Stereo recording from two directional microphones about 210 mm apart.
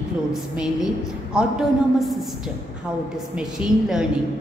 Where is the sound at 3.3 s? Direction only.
5° right (ahead or behind).